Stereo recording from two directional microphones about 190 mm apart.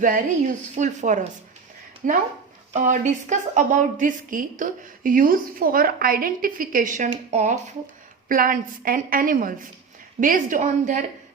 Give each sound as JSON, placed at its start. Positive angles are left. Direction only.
{"t": 0.0, "sound": "a woman's voice", "side_deg": -45}